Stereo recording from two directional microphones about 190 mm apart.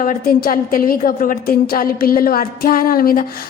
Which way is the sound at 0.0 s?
45° left (ahead or behind).